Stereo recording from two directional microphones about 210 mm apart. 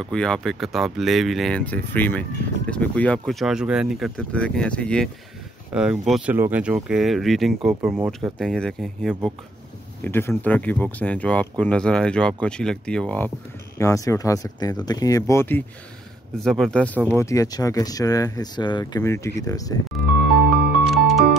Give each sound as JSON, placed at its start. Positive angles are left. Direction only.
{"t": 0.0, "sound": "speech", "side_deg": 5}
{"t": 8.1, "sound": "speech", "side_deg": 0}
{"t": 20.9, "sound": "music", "side_deg": 0}